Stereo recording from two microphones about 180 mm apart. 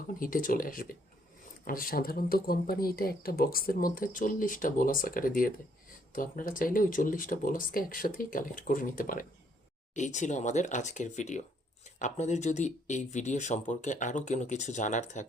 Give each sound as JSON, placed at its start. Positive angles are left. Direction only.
{"t": 0.1, "sound": "speech", "side_deg": 50}